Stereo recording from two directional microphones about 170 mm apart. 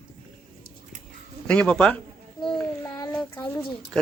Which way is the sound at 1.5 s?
5° left (ahead or behind).